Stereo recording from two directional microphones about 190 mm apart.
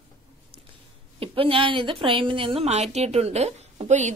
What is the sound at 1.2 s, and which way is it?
A woman's voice, 30° right (ahead or behind).